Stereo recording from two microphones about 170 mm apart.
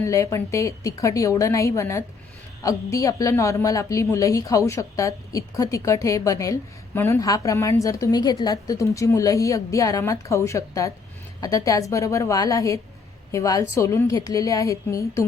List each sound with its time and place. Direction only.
0.0 s a woman's voice: 20° left (ahead or behind)